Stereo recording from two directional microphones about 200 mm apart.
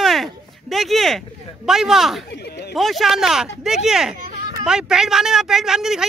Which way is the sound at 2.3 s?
55° left (ahead or behind).